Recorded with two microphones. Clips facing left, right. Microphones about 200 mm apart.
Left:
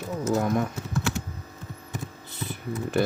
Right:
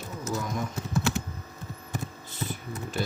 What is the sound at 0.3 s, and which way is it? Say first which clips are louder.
Speech: left 7 dB; 60° left (ahead or behind).